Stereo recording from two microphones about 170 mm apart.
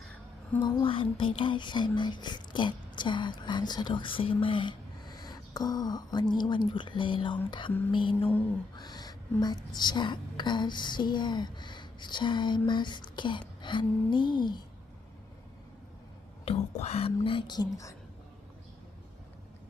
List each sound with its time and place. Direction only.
0.6 s a woman's voice: 30° left (ahead or behind)
16.5 s speech: 40° left (ahead or behind); by 17.9 s 20° left (ahead or behind)